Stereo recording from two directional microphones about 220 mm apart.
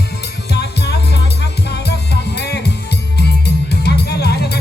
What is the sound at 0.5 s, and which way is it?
Music, 50° left (ahead or behind).